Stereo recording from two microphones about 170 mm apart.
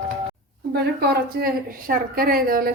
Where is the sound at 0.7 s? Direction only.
70° right (ahead or behind).